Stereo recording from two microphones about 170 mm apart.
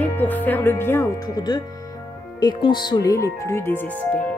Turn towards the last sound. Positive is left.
turn(degrees=15)  # may be behind; listen again after turning